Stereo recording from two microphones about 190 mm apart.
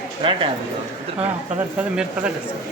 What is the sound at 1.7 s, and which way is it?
Speech, 5° right (ahead or behind).